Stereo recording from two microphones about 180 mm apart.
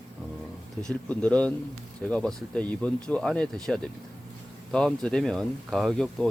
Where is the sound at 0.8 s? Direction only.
5° left (ahead or behind).